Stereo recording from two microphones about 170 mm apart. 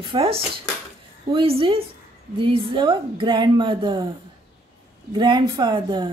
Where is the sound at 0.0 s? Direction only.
35° right (ahead or behind).